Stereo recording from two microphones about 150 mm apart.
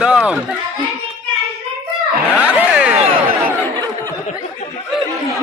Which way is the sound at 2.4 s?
5° right (ahead or behind).